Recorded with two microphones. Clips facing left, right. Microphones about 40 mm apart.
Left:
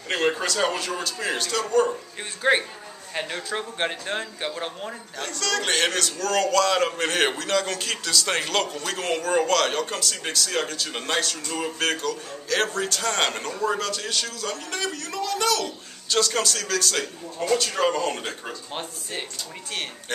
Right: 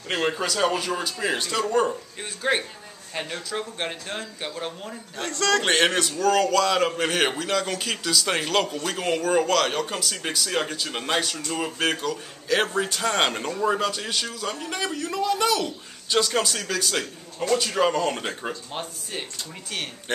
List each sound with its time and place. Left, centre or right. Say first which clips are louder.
0.1 s a man's voice: left 1 dB; centre
2.4 s speech: left 3 dB; centre
5.1 s a man's voice: right 5 dB; right
5.6 s a man's voice: right 2 dB; right; by 18.2 s centre
18.2 s a man's voice: right 2 dB; centre
18.7 s speech: even; centre